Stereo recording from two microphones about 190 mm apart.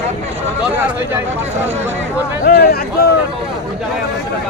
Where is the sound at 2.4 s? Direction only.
55° left (ahead or behind).